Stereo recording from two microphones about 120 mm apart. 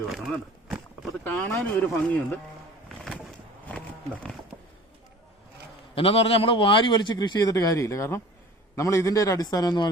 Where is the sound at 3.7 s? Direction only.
10° left (ahead or behind).